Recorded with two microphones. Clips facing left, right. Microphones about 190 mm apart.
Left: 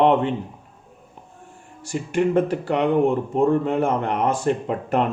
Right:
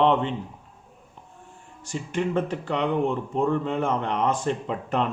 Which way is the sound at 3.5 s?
45° left (ahead or behind).